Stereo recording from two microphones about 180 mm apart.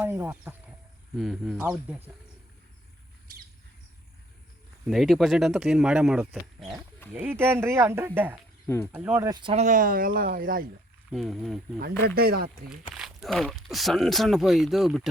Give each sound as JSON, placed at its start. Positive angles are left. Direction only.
{"t": 0.0, "sound": "speech", "side_deg": -10}
{"t": 4.9, "sound": "speech", "side_deg": 0}
{"t": 8.6, "sound": "speech", "side_deg": 15}
{"t": 8.9, "sound": "speech", "side_deg": -10}
{"t": 9.2, "sound": "speech", "side_deg": -25}
{"t": 11.1, "sound": "speech", "side_deg": 0}
{"t": 11.8, "sound": "speech", "side_deg": -60}
{"t": 12.9, "sound": "speech", "side_deg": 0}